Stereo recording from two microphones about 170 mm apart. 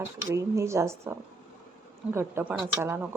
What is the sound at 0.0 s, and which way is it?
Speech, 15° right (ahead or behind).